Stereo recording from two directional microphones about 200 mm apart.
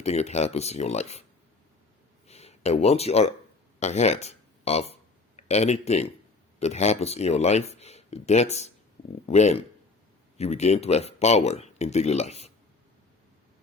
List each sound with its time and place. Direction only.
0.0 s speech: 35° left (ahead or behind)
2.2 s a sound: 30° left (ahead or behind)
3.8 s speech: 35° left (ahead or behind)